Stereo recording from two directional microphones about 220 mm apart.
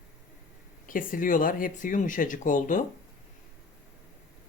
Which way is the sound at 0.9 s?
40° left (ahead or behind).